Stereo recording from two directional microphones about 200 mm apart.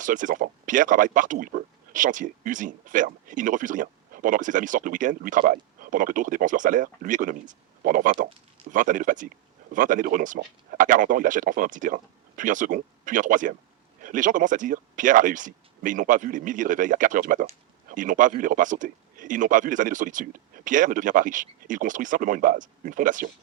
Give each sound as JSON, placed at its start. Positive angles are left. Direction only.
{"t": 0.0, "sound": "speech", "side_deg": -40}